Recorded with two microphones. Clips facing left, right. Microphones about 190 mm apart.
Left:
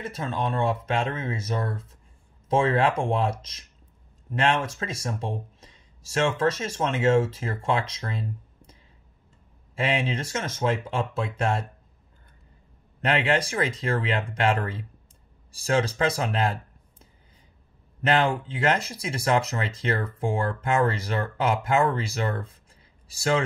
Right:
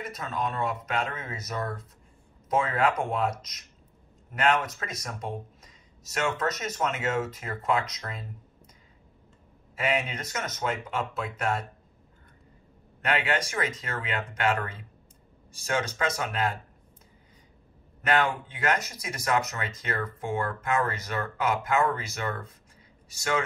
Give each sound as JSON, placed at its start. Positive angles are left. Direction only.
{"t": 0.0, "sound": "speech", "side_deg": 30}
{"t": 9.8, "sound": "speech", "side_deg": 30}
{"t": 13.0, "sound": "speech", "side_deg": 30}
{"t": 18.0, "sound": "speech", "side_deg": 30}